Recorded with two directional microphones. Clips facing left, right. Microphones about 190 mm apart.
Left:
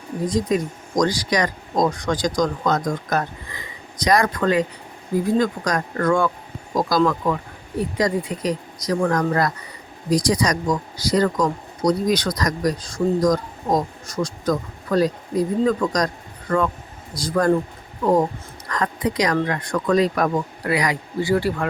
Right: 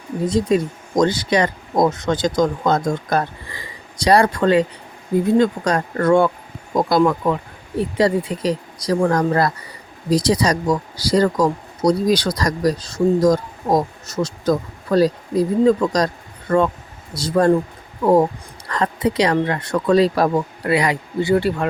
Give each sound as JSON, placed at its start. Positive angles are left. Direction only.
{"t": 0.3, "sound": "speech", "side_deg": -25}